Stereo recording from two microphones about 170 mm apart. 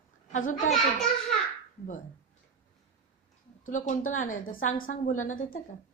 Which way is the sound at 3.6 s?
50° left (ahead or behind).